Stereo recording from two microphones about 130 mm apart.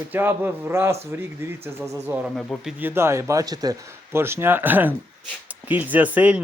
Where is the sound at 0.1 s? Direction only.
15° right (ahead or behind).